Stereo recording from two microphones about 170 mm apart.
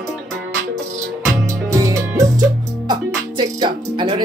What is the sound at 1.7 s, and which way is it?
Music, 15° right (ahead or behind).